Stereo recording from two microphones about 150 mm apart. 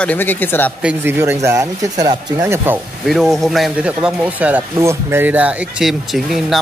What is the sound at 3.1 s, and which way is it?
Speech, centre (ahead or behind).